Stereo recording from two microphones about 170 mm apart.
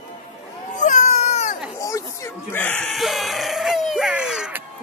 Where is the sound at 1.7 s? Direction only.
20° left (ahead or behind); by 4.6 s 5° right (ahead or behind).